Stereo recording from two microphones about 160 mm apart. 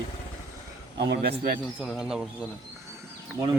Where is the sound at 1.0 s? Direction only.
90° right; by 1.6 s 70° right (ahead or behind).